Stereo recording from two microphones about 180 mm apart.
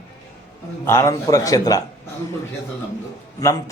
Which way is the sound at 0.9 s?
15° left (ahead or behind).